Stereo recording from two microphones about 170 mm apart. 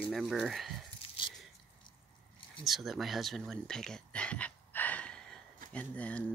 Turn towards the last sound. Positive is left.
turn(degrees=10)  # may be behind; listen again after turning